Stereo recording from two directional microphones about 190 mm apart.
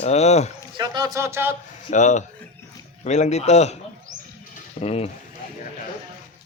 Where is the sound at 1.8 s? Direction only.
40° left (ahead or behind).